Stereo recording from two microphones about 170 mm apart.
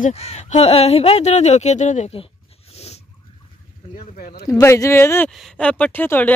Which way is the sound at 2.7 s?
40° left (ahead or behind).